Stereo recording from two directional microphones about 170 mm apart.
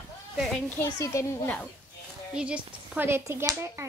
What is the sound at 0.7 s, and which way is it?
Speech, 15° left (ahead or behind).